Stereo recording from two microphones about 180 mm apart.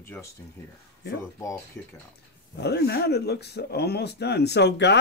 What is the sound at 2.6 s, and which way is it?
Speech, 65° left (ahead or behind).